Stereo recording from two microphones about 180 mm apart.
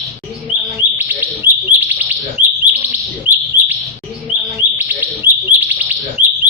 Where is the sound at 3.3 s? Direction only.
45° right (ahead or behind).